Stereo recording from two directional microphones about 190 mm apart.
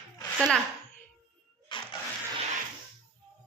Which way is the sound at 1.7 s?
25° left (ahead or behind).